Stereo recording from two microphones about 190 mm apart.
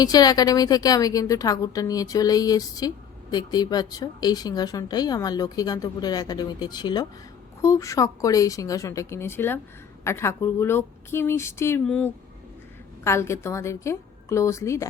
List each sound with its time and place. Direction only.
0.0 s a woman's voice: 20° left (ahead or behind)
13.1 s a woman's voice: 15° left (ahead or behind)